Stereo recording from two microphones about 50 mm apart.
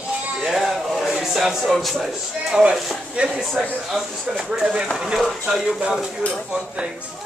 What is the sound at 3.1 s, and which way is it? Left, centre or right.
Speech, right.